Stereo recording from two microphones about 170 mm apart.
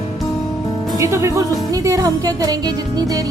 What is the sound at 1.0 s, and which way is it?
Speech, 15° right (ahead or behind).